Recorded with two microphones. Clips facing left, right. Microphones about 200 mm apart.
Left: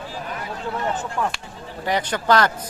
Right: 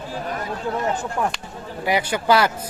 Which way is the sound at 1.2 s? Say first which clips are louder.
Right 1 dB; 15° right (ahead or behind).